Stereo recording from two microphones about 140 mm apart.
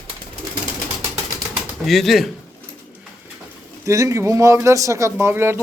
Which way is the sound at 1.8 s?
Centre (ahead or behind).